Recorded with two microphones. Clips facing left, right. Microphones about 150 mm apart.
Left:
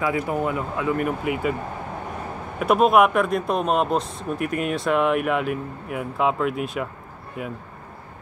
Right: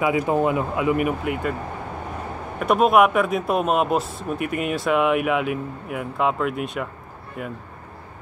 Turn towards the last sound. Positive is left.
turn(degrees=0)  # may be behind; listen again after turning